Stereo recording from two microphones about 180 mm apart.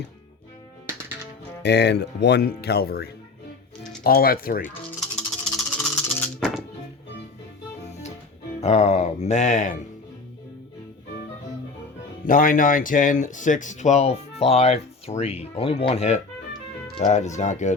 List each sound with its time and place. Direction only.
1.6 s speech: 70° left (ahead or behind); by 4.7 s 55° left (ahead or behind)
4.9 s music: 5° left (ahead or behind)
8.6 s speech: 35° left (ahead or behind)
12.2 s speech: 50° left (ahead or behind)